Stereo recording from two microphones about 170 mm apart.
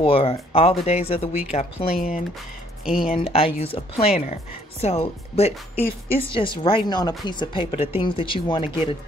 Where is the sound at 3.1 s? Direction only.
35° left (ahead or behind).